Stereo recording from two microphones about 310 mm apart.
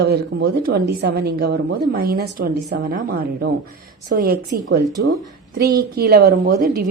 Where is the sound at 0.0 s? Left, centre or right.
Right.